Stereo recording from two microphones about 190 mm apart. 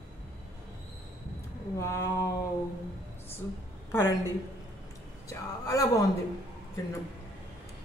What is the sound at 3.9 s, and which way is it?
Speech, 10° left (ahead or behind).